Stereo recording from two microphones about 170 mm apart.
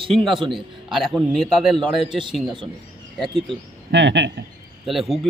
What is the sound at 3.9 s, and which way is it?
Speech, 90° right.